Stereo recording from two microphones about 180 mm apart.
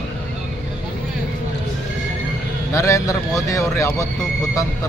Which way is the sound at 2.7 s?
15° left (ahead or behind).